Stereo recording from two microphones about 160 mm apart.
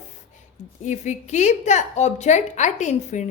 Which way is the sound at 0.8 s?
45° left (ahead or behind).